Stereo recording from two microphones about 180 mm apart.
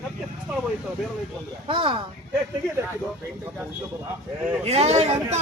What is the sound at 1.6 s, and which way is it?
Speech, 30° right (ahead or behind).